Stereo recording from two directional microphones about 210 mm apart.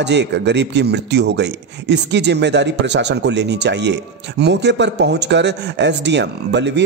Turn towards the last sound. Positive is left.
turn(degrees=-55)  # may be behind; listen again after turning